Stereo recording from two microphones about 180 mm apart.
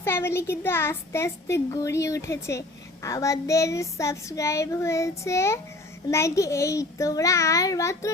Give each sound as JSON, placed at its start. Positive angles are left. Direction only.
{"t": 0.0, "sound": "a child's voice", "side_deg": 15}